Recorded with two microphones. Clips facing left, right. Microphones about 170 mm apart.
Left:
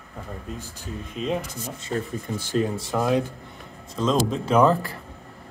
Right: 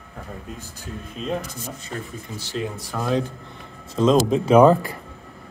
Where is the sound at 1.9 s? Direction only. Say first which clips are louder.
Left 7 dB; 45° left (ahead or behind).